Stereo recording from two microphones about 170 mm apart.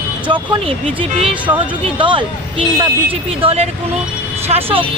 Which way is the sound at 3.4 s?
35° right (ahead or behind).